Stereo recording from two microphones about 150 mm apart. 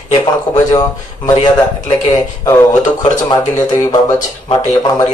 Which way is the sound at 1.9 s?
20° left (ahead or behind).